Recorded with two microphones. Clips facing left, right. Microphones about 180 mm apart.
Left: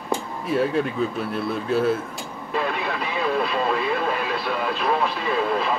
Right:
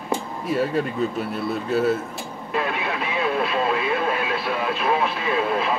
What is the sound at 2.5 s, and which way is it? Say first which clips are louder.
Radio: even; centre (ahead or behind).